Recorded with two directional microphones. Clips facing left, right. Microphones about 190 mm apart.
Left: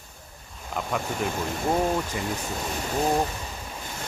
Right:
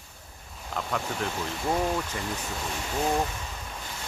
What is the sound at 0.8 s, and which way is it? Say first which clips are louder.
Speech: left 2 dB; 10° left (ahead or behind).